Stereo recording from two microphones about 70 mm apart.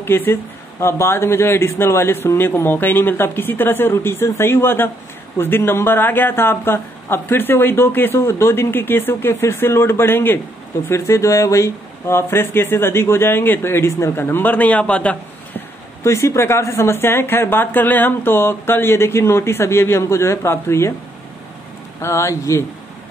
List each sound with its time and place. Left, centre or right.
0.0 s speech: left
10.9 s speech: left; by 15.6 s centre
16.0 s speech: left
22.0 s speech: left